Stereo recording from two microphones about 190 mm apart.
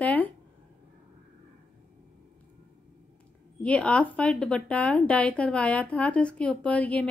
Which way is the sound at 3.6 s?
5° left (ahead or behind).